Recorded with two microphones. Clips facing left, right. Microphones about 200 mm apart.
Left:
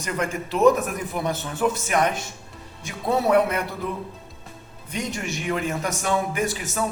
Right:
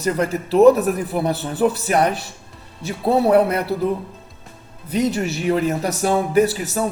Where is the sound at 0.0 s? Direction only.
35° right (ahead or behind).